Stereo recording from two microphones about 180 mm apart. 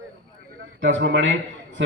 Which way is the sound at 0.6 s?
90° right.